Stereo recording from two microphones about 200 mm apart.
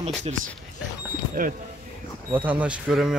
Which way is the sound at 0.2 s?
40° right (ahead or behind).